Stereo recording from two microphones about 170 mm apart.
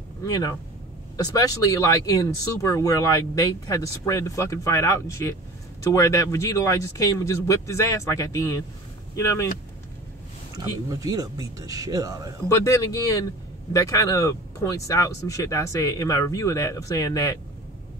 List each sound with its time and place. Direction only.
0.2 s speech: 20° left (ahead or behind)
10.9 s speech: 20° right (ahead or behind)
12.4 s speech: 20° left (ahead or behind)